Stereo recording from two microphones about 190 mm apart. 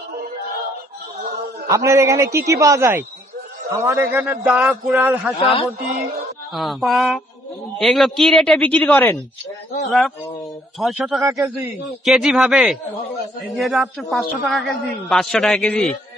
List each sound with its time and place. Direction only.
1.7 s a man's voice: 15° right (ahead or behind)
5.4 s speech: 30° left (ahead or behind)
6.5 s a man's voice: centre (ahead or behind)
9.8 s a man's voice: centre (ahead or behind)